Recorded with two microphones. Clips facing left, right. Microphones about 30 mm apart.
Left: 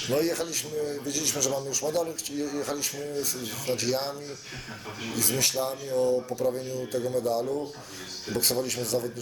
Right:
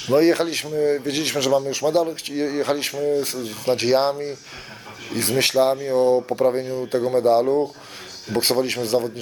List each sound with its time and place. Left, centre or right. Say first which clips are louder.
0.1 s speech: right 11 dB; right